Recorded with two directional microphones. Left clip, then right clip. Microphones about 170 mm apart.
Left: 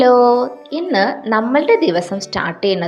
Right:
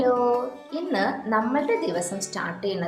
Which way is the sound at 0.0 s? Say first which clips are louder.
Left 11 dB; 40° left (ahead or behind).